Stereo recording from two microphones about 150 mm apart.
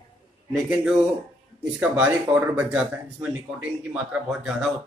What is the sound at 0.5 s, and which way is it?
A man's voice, centre (ahead or behind).